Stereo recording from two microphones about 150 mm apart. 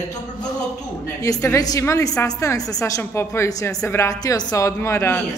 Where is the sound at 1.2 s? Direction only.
20° left (ahead or behind).